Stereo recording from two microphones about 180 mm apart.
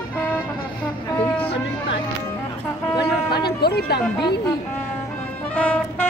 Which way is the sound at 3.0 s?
60° left (ahead or behind).